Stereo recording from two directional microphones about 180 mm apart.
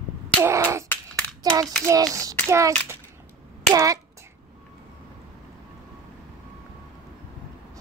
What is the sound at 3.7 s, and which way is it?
Speech, 20° right (ahead or behind).